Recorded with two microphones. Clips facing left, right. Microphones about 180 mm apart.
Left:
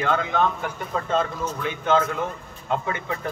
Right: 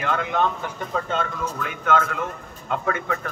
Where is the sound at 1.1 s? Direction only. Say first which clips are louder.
Left 2 dB; 30° left (ahead or behind).